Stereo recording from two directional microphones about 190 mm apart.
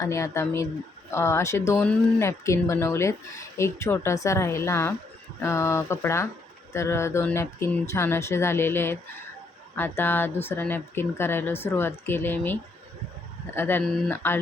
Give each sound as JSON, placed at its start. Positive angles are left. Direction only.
{"t": 0.0, "sound": "speech", "side_deg": 15}